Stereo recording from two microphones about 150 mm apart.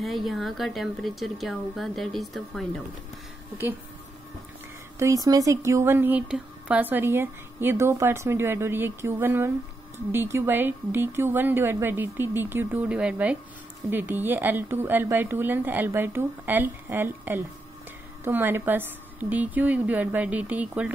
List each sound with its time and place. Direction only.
0.0 s a woman's voice: centre (ahead or behind)
4.9 s speech: 20° right (ahead or behind)